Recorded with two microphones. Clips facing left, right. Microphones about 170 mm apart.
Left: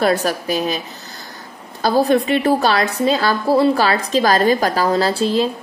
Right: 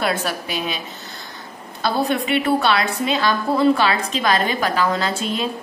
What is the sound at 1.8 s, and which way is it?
A woman's voice, 35° left (ahead or behind).